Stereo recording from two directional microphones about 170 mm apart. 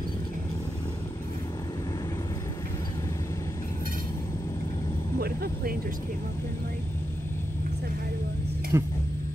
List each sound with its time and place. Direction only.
5.2 s vehicle: 60° right (ahead or behind)
8.7 s speech: 15° right (ahead or behind)